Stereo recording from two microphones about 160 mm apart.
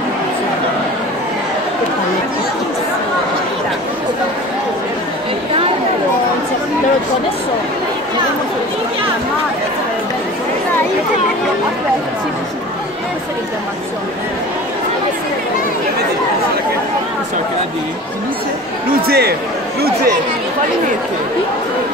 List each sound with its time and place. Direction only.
19.0 s speech: 80° right